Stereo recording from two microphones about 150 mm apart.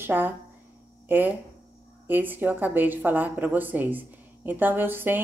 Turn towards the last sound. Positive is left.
turn(degrees=-15)  # may be behind; listen again after turning